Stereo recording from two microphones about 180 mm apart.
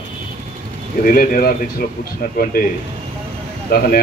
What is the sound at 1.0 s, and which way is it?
Speech, 55° left (ahead or behind).